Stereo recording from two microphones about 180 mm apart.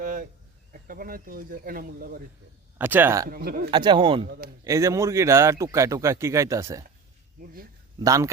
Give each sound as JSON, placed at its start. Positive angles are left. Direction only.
{"t": 0.0, "sound": "a sound", "side_deg": -50}
{"t": 0.7, "sound": "speech", "side_deg": -50}
{"t": 2.7, "sound": "speech", "side_deg": -10}
{"t": 3.2, "sound": "speech", "side_deg": -55}
{"t": 3.7, "sound": "speech", "side_deg": -25}
{"t": 4.3, "sound": "speech", "side_deg": -55}
{"t": 4.6, "sound": "speech", "side_deg": -15}
{"t": 7.4, "sound": "speech", "side_deg": -55}
{"t": 7.9, "sound": "speech", "side_deg": -20}